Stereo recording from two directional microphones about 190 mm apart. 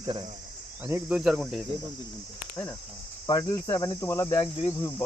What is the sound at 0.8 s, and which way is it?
Speech, 5° right (ahead or behind).